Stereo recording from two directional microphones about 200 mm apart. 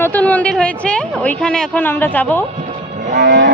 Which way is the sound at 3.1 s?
60° right (ahead or behind).